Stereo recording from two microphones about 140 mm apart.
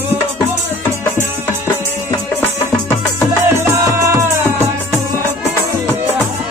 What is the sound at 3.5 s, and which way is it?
Music, 20° right (ahead or behind).